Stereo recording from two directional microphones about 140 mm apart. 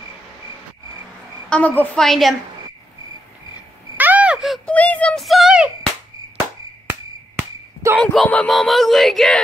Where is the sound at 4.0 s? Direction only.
10° right (ahead or behind).